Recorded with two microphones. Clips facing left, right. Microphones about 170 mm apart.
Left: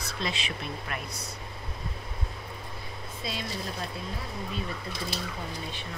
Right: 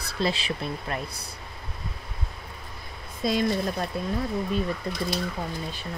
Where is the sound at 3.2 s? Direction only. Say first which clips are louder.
Right 12 dB; 45° right (ahead or behind).